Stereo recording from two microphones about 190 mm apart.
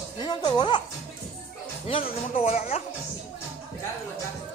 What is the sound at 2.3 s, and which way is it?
Speech, 35° left (ahead or behind).